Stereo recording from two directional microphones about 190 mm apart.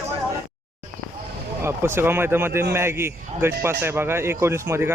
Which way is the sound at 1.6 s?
10° right (ahead or behind).